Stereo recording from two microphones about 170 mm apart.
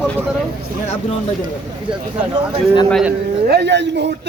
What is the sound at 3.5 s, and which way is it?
Speech, 80° right.